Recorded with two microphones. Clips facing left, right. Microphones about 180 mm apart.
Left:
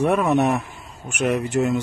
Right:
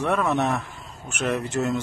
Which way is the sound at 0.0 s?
20° left (ahead or behind).